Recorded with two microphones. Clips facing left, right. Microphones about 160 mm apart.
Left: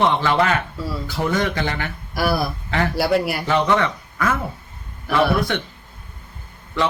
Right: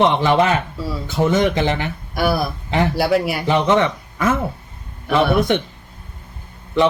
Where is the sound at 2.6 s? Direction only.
20° right (ahead or behind).